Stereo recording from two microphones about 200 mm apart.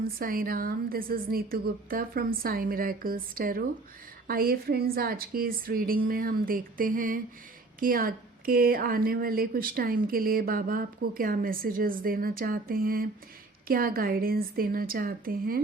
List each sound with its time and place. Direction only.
0.0 s a woman's voice: 45° right (ahead or behind)